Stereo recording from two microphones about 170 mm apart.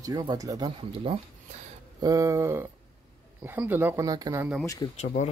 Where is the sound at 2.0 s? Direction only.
20° right (ahead or behind).